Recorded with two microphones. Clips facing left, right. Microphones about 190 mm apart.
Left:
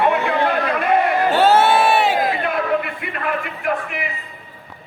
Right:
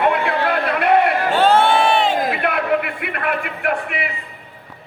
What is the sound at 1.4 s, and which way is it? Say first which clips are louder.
Crowd: even; 5° left (ahead or behind).